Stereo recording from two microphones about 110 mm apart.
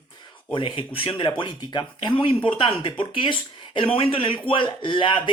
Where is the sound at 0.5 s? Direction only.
50° left (ahead or behind).